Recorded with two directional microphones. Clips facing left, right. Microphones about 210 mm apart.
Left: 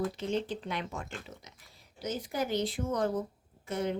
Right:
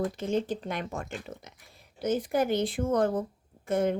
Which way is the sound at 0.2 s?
45° right (ahead or behind).